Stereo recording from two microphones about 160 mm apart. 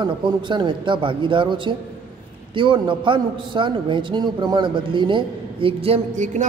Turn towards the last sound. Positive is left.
turn(degrees=-45)  # may be behind; listen again after turning